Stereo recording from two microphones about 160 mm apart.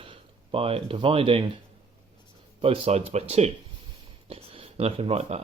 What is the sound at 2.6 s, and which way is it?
Speech, 35° right (ahead or behind).